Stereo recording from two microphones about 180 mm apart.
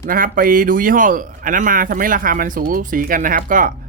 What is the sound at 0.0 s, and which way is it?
Speech, 50° right (ahead or behind).